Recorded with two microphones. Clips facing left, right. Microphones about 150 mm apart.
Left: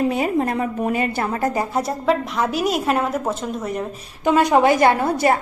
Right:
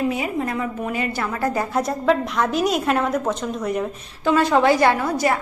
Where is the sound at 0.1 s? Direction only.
45° left (ahead or behind).